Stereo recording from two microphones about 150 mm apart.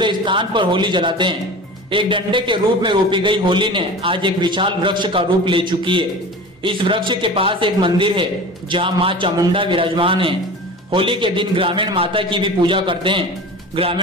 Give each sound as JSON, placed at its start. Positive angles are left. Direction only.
{"t": 0.0, "sound": "a man's voice", "side_deg": -35}